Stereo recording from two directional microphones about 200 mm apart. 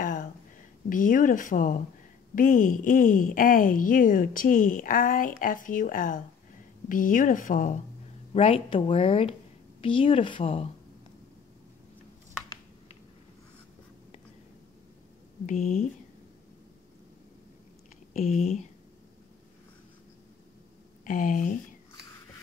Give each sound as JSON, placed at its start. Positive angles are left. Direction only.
{"t": 0.0, "sound": "a sound", "side_deg": 45}
{"t": 0.8, "sound": "a woman's voice", "side_deg": 40}
{"t": 8.4, "sound": "speech", "side_deg": 30}
{"t": 15.4, "sound": "speech", "side_deg": 35}
{"t": 18.2, "sound": "speech", "side_deg": 35}
{"t": 21.0, "sound": "speech", "side_deg": 40}